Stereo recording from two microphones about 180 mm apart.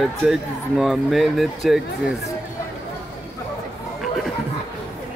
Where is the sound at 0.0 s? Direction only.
Centre (ahead or behind).